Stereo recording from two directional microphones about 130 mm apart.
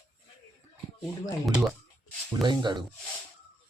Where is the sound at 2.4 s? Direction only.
35° right (ahead or behind).